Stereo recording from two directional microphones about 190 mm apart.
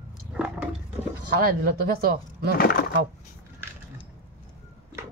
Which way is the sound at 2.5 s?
50° left (ahead or behind).